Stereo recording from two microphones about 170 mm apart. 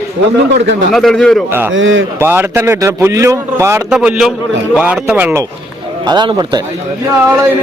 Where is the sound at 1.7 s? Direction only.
90° right.